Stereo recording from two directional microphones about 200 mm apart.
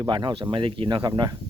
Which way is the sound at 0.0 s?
25° right (ahead or behind).